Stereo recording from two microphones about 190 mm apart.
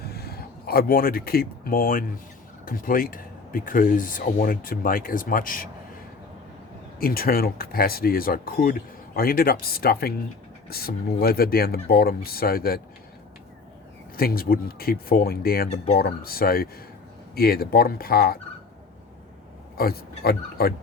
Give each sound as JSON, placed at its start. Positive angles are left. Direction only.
{"t": 0.0, "sound": "speech", "side_deg": 55}
{"t": 7.0, "sound": "speech", "side_deg": 50}
{"t": 14.2, "sound": "speech", "side_deg": 50}
{"t": 19.7, "sound": "speech", "side_deg": 55}